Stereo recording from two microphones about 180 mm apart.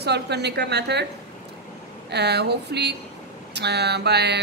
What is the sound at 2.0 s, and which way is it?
A woman's voice, 65° right (ahead or behind).